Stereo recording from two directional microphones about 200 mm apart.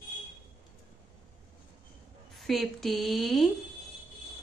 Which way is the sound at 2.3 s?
Centre (ahead or behind).